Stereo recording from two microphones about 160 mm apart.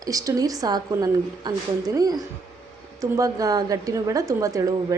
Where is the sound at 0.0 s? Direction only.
20° right (ahead or behind).